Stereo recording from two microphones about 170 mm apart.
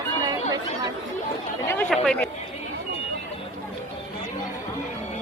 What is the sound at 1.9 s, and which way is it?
Speech, 5° left (ahead or behind).